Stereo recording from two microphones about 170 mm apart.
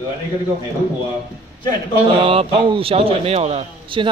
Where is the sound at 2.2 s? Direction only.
30° right (ahead or behind).